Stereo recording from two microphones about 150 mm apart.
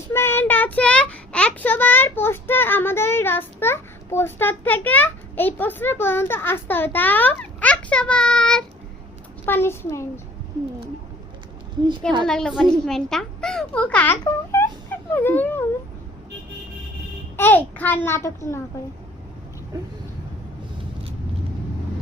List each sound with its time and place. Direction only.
0.1 s a child's voice: 15° left (ahead or behind)
9.5 s a child's voice: 15° left (ahead or behind)
12.2 s a child's voice: 5° left (ahead or behind)
17.3 s a child's voice: 15° left (ahead or behind)